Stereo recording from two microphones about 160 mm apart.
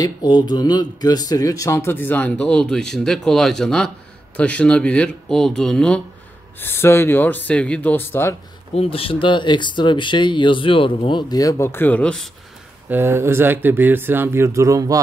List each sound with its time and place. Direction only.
0.0 s speech: 25° left (ahead or behind); by 5.9 s 5° left (ahead or behind)
6.6 s speech: 15° left (ahead or behind)
8.7 s speech: 35° left (ahead or behind); by 12.3 s 5° left (ahead or behind)
12.9 s speech: 15° right (ahead or behind)